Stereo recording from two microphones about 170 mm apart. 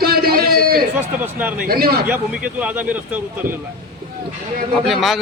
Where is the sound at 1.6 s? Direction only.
65° right (ahead or behind).